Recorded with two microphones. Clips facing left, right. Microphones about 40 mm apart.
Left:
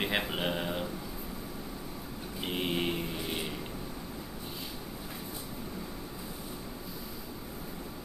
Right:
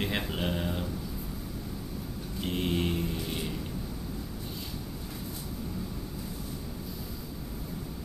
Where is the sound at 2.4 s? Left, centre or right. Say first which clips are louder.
Right 2 dB; centre.